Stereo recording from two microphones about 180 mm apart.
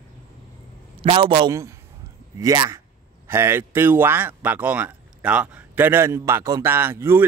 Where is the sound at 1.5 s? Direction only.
15° right (ahead or behind).